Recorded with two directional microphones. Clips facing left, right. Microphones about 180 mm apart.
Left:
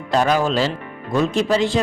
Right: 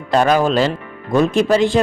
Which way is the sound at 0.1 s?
55° right (ahead or behind).